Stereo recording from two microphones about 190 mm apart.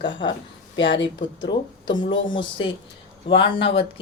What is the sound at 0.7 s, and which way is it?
Speech, 70° left (ahead or behind).